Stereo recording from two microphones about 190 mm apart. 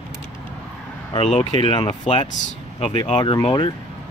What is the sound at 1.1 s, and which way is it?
Speech, 30° left (ahead or behind).